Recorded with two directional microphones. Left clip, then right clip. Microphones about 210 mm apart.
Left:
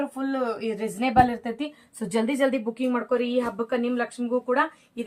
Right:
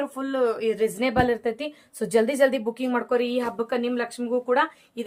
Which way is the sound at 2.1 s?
40° right (ahead or behind).